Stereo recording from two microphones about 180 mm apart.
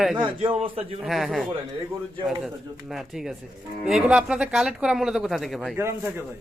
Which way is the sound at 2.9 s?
Centre (ahead or behind).